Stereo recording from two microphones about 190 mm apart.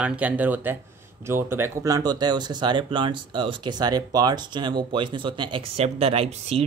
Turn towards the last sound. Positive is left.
turn(degrees=-30)  # may be behind; listen again after turning